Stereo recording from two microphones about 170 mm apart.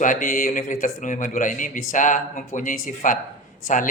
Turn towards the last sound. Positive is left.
turn(degrees=50)  # may be behind; listen again after turning